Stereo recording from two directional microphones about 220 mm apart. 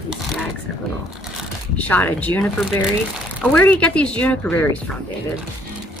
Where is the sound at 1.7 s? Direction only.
5° left (ahead or behind).